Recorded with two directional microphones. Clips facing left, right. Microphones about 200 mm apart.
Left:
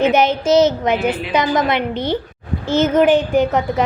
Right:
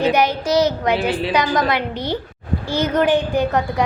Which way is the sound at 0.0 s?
20° left (ahead or behind).